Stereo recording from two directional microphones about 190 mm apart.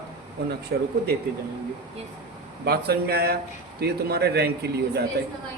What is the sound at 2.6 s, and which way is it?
A man's voice, 55° right (ahead or behind).